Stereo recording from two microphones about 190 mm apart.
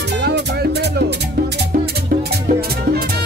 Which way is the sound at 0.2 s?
60° right (ahead or behind).